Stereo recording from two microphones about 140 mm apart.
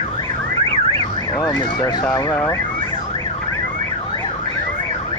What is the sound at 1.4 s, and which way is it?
Emergency vehicle, 30° left (ahead or behind).